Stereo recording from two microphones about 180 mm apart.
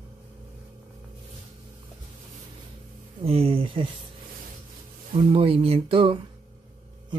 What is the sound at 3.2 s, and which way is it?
Speech, 30° right (ahead or behind).